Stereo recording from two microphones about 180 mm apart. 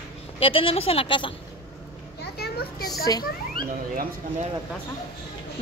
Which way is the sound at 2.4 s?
60° left (ahead or behind).